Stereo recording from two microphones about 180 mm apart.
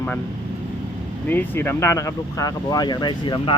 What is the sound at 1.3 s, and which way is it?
Speech, 10° left (ahead or behind).